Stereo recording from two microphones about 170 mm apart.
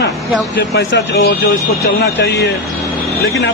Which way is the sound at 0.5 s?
90° left.